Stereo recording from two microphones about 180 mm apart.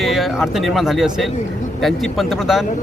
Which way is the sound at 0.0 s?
Centre (ahead or behind).